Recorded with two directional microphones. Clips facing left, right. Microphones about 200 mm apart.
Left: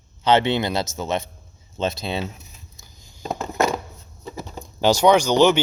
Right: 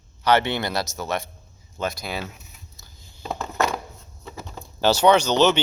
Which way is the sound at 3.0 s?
15° left (ahead or behind).